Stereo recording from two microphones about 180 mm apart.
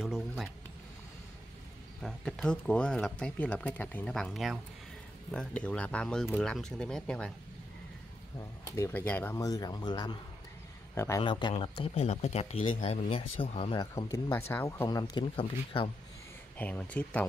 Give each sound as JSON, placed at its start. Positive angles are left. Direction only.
{"t": 0.0, "sound": "a sound", "side_deg": 0}
{"t": 2.0, "sound": "speech", "side_deg": 0}
{"t": 8.4, "sound": "speech", "side_deg": 15}
{"t": 11.2, "sound": "speech", "side_deg": 25}
{"t": 13.9, "sound": "speech", "side_deg": 15}
{"t": 16.5, "sound": "speech", "side_deg": 10}